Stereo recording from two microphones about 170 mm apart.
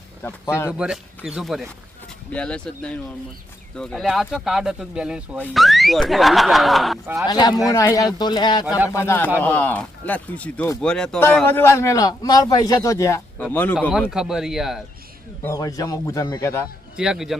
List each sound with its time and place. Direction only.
0.2 s speech: 15° left (ahead or behind)
0.7 s speech: 5° right (ahead or behind)
7.3 s speech: 25° left (ahead or behind)
8.9 s speech: 15° left (ahead or behind)
14.1 s speech: 5° right (ahead or behind)
15.4 s speech: 20° left (ahead or behind)
17.0 s speech: 5° right (ahead or behind)